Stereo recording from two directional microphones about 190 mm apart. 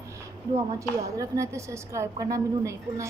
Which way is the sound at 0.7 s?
15° right (ahead or behind).